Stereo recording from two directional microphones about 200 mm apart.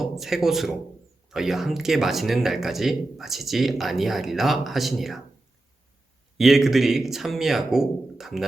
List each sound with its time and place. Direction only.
0.0 s a man's voice: centre (ahead or behind)
6.3 s speech: centre (ahead or behind)